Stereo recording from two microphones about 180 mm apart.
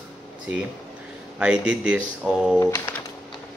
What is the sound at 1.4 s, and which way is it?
Speech, 5° right (ahead or behind).